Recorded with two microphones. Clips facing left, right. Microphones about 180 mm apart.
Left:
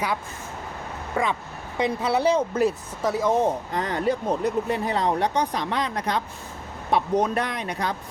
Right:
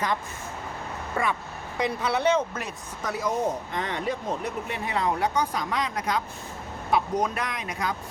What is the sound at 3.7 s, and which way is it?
Speech, 35° left (ahead or behind).